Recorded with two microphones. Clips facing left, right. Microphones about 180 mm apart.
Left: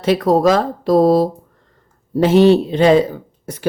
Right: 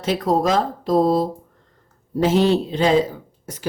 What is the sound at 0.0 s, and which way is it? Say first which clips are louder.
Speech: left 6 dB; 65° left (ahead or behind).